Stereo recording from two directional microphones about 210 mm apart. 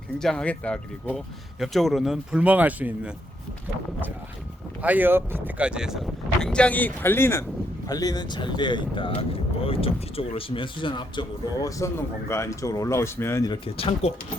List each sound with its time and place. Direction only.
0.2 s speech: 5° left (ahead or behind)
4.8 s speech: 10° right (ahead or behind); by 14.1 s 25° left (ahead or behind)